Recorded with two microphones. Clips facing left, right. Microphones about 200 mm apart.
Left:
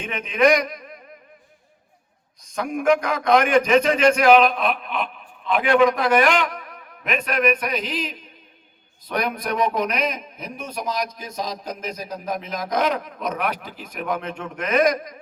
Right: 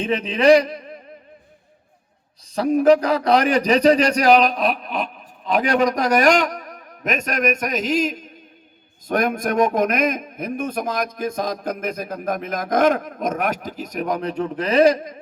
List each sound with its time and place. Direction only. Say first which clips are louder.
0.0 s a man's voice: right 2 dB; 35° right (ahead or behind)
2.4 s a man's voice: right 7 dB; 35° right (ahead or behind)